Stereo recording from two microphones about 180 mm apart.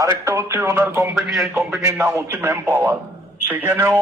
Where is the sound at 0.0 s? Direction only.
15° right (ahead or behind).